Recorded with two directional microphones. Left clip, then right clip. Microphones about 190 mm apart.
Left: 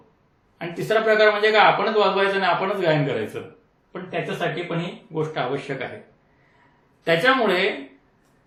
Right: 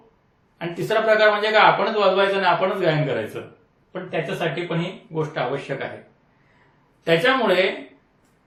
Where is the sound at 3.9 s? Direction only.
15° left (ahead or behind).